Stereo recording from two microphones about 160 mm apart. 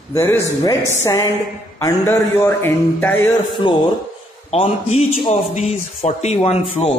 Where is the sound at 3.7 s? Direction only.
30° left (ahead or behind).